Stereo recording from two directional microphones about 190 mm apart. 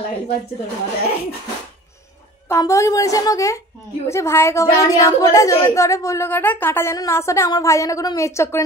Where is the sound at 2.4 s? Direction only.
15° left (ahead or behind).